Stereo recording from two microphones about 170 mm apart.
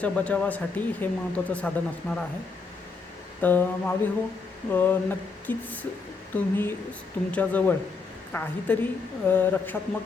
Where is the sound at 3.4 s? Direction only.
10° left (ahead or behind).